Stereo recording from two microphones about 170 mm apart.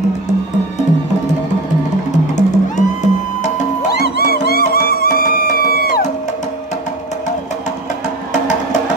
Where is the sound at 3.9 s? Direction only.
70° left (ahead or behind).